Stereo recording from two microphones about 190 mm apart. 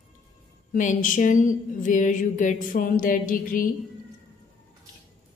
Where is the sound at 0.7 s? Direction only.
45° left (ahead or behind).